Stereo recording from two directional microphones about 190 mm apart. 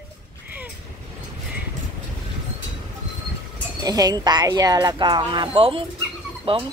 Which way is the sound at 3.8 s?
20° right (ahead or behind).